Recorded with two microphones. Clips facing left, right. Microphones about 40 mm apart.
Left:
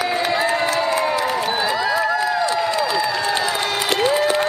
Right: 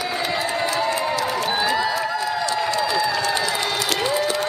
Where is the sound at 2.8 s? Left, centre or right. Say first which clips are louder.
Left 1 dB; centre.